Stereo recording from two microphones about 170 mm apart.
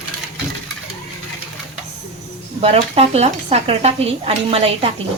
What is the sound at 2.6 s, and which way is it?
Speech, 35° right (ahead or behind).